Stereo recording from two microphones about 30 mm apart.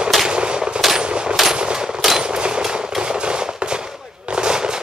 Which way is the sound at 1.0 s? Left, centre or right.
Right.